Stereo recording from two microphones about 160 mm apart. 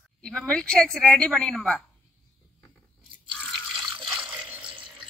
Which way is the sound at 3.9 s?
10° right (ahead or behind).